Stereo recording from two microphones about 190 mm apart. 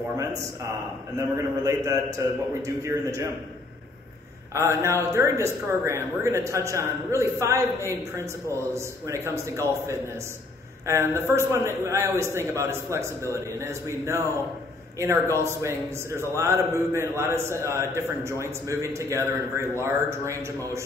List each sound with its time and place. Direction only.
0.2 s a man's voice: 15° right (ahead or behind)
4.6 s a man's voice: 15° right (ahead or behind)
15.3 s a man's voice: 15° right (ahead or behind)